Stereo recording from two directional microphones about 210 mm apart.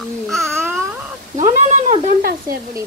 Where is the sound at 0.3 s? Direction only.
Centre (ahead or behind).